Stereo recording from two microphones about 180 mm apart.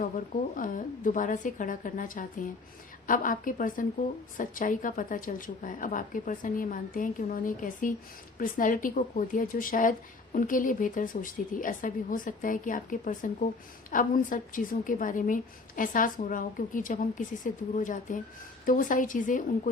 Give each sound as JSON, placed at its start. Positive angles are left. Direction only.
{"t": 0.5, "sound": "a woman's voice", "side_deg": 45}